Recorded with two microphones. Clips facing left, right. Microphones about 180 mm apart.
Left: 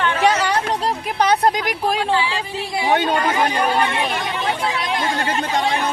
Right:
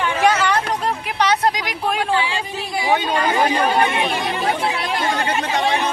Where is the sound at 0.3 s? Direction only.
30° left (ahead or behind).